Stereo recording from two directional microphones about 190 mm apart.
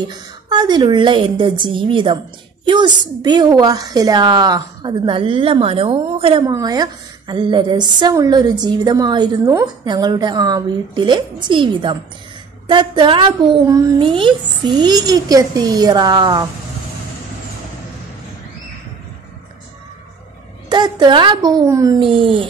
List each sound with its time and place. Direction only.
0.1 s a woman's voice: 20° right (ahead or behind)
20.7 s a woman's voice: 25° right (ahead or behind)